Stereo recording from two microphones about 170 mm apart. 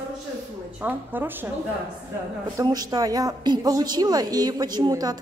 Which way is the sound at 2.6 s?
20° right (ahead or behind).